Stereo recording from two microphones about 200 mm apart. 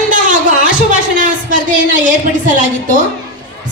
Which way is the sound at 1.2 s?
40° right (ahead or behind).